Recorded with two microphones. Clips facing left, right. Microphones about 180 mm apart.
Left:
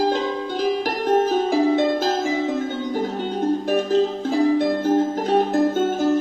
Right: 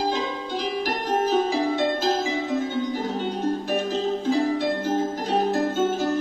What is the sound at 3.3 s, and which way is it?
Music, 55° left (ahead or behind).